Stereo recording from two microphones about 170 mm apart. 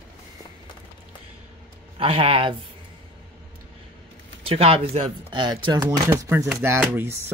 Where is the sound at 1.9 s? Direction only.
35° right (ahead or behind).